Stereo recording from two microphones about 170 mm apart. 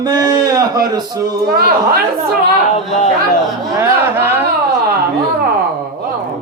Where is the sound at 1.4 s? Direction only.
65° right (ahead or behind).